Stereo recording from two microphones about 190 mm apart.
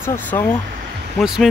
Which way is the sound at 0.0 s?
10° left (ahead or behind).